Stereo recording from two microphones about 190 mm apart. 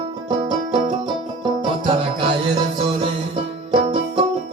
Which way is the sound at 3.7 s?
25° right (ahead or behind).